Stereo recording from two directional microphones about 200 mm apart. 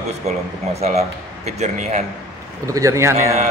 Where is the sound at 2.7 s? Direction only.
15° right (ahead or behind).